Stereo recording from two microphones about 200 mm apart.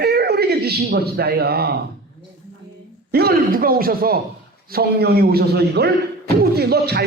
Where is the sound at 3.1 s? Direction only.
50° right (ahead or behind).